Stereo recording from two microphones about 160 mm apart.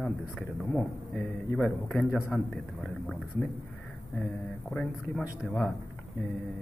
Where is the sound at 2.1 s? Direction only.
15° left (ahead or behind).